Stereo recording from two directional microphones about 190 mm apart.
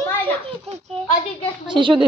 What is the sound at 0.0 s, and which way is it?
Children playing, 10° left (ahead or behind).